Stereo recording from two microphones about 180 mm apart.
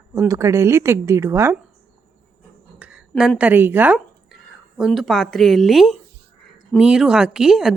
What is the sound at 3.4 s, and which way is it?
A woman's voice, 10° right (ahead or behind).